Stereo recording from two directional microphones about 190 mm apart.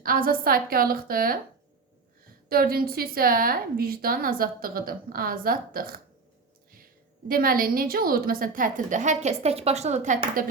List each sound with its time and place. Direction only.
0.0 s a woman's voice: 50° right (ahead or behind)
2.5 s a woman's voice: 50° right (ahead or behind)
7.3 s a woman's voice: 50° right (ahead or behind)